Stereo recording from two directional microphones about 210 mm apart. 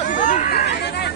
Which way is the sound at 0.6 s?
50° left (ahead or behind).